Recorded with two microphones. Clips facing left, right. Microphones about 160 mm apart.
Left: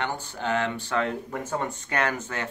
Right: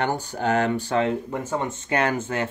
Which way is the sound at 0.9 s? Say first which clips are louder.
Right 2 dB; 25° right (ahead or behind).